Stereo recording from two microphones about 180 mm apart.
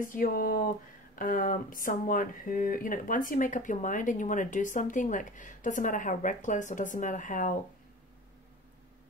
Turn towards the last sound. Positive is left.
turn(degrees=45)  # may be behind; listen again after turning